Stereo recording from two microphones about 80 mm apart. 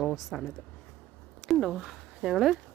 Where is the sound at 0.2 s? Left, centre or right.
Centre.